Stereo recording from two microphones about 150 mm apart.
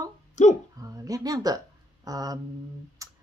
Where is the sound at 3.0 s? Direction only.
20° right (ahead or behind).